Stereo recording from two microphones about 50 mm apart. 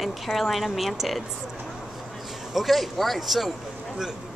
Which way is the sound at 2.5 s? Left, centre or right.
Centre.